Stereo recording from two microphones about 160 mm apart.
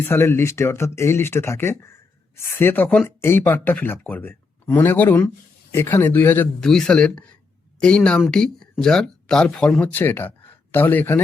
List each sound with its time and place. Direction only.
0.1 s speech: 15° left (ahead or behind)